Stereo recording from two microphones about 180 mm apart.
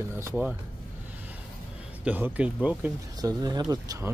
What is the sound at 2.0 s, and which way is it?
Speech, 10° right (ahead or behind).